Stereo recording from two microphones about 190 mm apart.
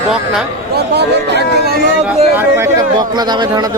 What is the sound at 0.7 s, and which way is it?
Speech, 60° right (ahead or behind).